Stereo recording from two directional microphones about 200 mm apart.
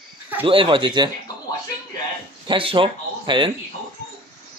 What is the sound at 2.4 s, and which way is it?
Speech, 25° right (ahead or behind).